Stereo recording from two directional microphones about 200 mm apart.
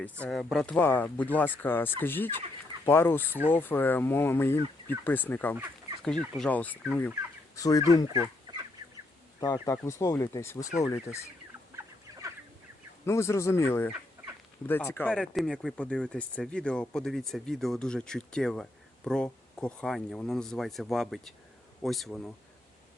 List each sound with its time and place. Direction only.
0.0 s speech: 5° left (ahead or behind)
7.9 s fowl: 25° left (ahead or behind)
8.5 s duck: 20° right (ahead or behind)
9.6 s speech: 15° left (ahead or behind)
13.1 s speech: 15° left (ahead or behind)